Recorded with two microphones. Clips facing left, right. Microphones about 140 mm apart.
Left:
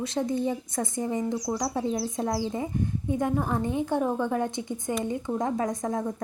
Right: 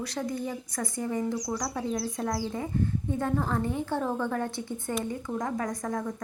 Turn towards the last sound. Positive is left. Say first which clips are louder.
# left 3 dB
turn(degrees=20)  # may be behind; listen again after turning